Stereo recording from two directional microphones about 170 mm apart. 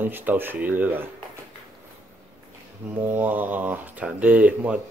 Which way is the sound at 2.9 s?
10° right (ahead or behind).